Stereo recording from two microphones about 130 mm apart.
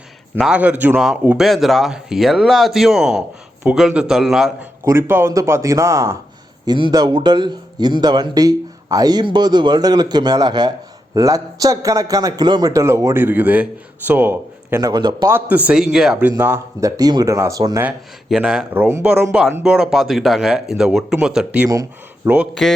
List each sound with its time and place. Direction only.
0.3 s speech: 5° right (ahead or behind)
0.9 s speech: centre (ahead or behind)
4.9 s speech: 20° right (ahead or behind)
6.7 s a man's voice: 35° right (ahead or behind); by 14.8 s 15° right (ahead or behind)
14.8 s a man's voice: 30° right (ahead or behind)
15.3 s speech: 15° right (ahead or behind)
16.4 s speech: 15° right (ahead or behind)
17.0 s speech: 30° right (ahead or behind)
18.3 s speech: 5° right (ahead or behind)
19.6 s speech: 5° right (ahead or behind)
21.7 s speech: 30° right (ahead or behind)
22.6 s speech: centre (ahead or behind)